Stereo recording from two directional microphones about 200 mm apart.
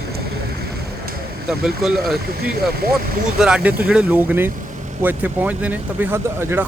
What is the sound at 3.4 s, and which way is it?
Speech, 5° right (ahead or behind).